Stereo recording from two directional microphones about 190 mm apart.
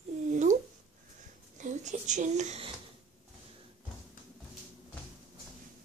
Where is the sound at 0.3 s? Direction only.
40° right (ahead or behind).